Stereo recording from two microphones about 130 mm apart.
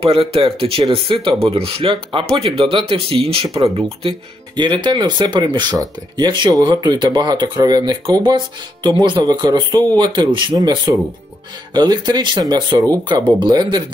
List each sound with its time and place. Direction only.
0.0 s speech: 45° right (ahead or behind)
4.6 s speech: 35° right (ahead or behind)